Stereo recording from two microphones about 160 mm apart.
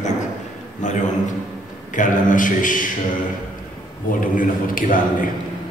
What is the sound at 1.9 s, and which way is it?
Speech, 55° left (ahead or behind).